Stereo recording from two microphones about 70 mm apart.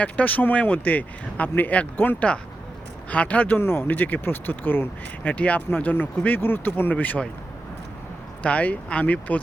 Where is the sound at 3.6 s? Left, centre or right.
Left.